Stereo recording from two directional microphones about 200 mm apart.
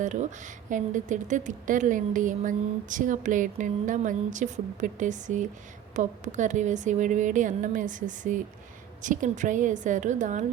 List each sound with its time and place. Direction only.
0.0 s speech: 40° right (ahead or behind)